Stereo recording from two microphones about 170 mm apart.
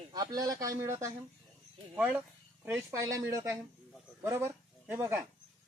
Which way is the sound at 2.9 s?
20° right (ahead or behind).